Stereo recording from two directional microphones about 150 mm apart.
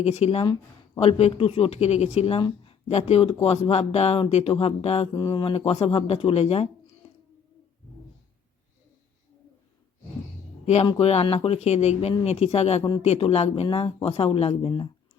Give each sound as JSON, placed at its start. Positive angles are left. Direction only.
{"t": 0.0, "sound": "speech", "side_deg": 45}
{"t": 5.1, "sound": "speech", "side_deg": 30}
{"t": 10.8, "sound": "speech", "side_deg": 40}